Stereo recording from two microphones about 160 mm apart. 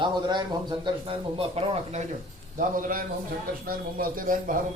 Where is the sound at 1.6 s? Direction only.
40° right (ahead or behind).